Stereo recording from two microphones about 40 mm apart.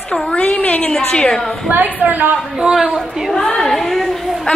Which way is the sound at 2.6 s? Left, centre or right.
Centre.